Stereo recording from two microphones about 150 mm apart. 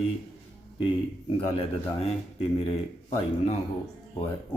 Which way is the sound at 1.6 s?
40° left (ahead or behind).